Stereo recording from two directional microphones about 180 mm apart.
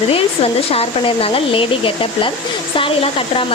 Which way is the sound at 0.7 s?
35° left (ahead or behind).